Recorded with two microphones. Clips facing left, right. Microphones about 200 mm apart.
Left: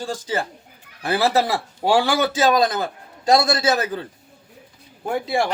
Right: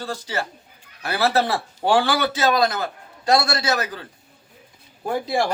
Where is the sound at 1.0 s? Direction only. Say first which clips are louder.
Left 1 dB; 10° left (ahead or behind).